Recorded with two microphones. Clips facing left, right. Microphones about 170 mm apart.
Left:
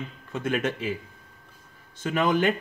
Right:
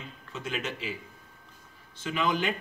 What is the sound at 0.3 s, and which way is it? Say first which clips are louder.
Speech: left 8 dB; 55° left (ahead or behind).